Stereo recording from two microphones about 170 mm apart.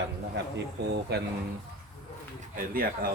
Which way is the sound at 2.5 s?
60° right (ahead or behind).